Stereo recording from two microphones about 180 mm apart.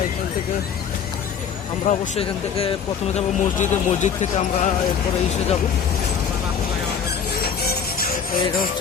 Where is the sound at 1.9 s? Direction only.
35° left (ahead or behind).